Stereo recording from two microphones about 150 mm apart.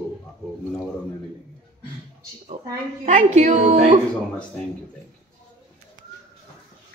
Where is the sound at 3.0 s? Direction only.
50° right (ahead or behind).